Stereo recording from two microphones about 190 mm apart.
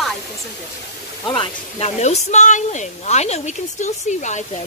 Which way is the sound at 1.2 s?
30° left (ahead or behind).